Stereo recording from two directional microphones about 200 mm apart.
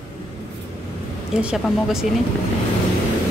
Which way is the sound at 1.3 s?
5° right (ahead or behind).